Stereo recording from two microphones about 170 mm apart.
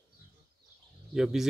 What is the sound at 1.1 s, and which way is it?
Speech, centre (ahead or behind).